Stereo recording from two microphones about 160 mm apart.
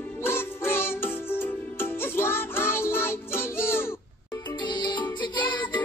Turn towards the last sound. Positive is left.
turn(degrees=30)  # may be behind; listen again after turning